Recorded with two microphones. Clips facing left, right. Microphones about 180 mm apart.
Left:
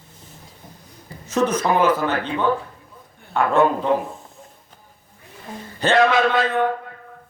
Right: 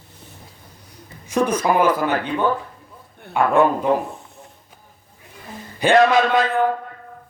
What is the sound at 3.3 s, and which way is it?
Speech, 10° right (ahead or behind).